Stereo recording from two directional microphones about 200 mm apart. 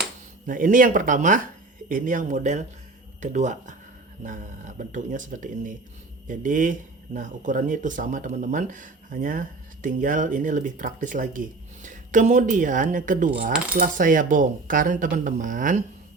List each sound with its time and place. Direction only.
0.4 s speech: 40° right (ahead or behind)